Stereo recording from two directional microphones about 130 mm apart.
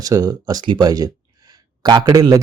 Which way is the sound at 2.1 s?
25° right (ahead or behind).